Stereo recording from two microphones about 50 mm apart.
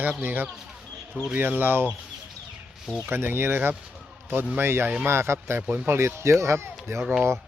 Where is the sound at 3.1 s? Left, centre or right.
Right.